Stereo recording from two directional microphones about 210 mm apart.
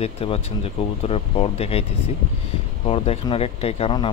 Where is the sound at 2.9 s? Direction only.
25° left (ahead or behind).